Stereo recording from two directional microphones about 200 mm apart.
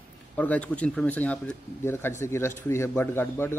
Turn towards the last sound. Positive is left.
turn(degrees=10)  # may be behind; listen again after turning